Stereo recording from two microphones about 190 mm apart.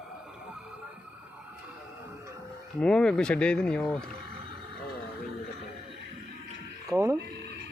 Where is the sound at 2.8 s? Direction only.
5° left (ahead or behind).